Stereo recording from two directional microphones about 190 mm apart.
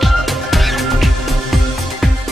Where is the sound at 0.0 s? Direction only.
Centre (ahead or behind).